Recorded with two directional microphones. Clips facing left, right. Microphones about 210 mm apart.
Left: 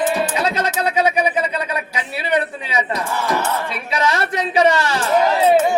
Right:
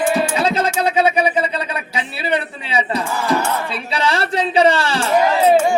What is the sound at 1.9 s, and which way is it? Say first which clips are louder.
Speech: even; 30° right (ahead or behind).